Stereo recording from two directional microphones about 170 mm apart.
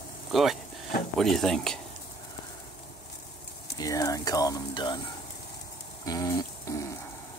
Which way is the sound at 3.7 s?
20° left (ahead or behind).